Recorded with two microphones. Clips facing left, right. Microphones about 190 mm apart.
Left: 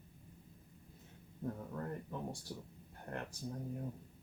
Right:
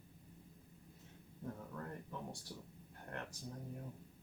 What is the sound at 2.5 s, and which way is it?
Speech, 25° left (ahead or behind).